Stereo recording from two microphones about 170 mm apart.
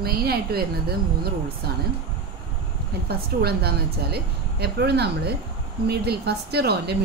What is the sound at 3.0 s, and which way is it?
Speech, 70° right (ahead or behind).